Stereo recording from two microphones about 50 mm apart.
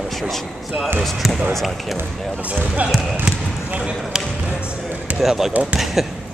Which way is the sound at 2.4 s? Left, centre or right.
Right.